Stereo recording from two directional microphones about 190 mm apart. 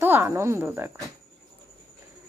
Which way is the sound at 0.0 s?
10° right (ahead or behind).